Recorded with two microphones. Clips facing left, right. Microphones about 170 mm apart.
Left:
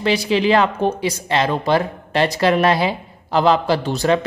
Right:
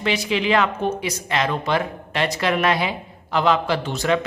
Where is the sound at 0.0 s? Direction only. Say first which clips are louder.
Left 5 dB; 35° left (ahead or behind).